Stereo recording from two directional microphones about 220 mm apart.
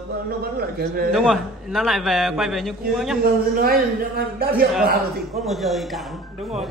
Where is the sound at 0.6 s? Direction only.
45° right (ahead or behind).